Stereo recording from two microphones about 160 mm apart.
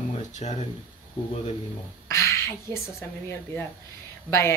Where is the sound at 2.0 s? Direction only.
15° left (ahead or behind).